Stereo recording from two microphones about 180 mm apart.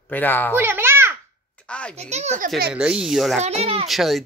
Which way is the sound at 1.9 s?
40° right (ahead or behind).